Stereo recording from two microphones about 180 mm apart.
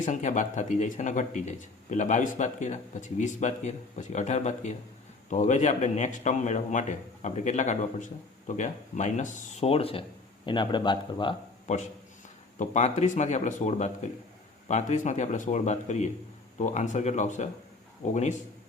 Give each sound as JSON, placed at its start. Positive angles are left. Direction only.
{"t": 0.0, "sound": "a man's voice", "side_deg": 40}
{"t": 12.5, "sound": "speech", "side_deg": 40}